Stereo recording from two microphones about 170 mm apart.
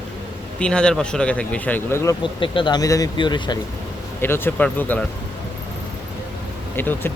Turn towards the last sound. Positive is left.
turn(degrees=10)  # may be behind; listen again after turning